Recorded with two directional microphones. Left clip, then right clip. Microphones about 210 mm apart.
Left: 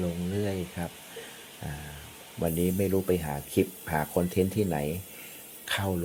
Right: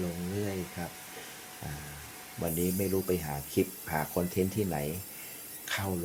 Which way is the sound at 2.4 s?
15° left (ahead or behind).